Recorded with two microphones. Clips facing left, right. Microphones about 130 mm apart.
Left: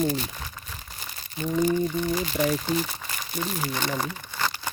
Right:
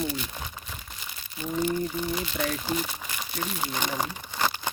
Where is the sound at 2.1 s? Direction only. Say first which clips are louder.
Left 5 dB; 40° left (ahead or behind).